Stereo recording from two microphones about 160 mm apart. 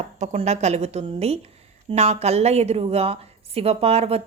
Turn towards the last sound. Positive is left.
turn(degrees=-40)  # may be behind; listen again after turning